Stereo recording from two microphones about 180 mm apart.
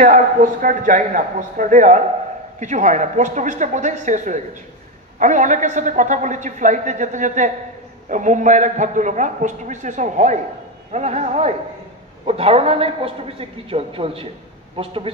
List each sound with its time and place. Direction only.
0.0 s a man's voice: 50° right (ahead or behind); by 14.9 s 30° right (ahead or behind)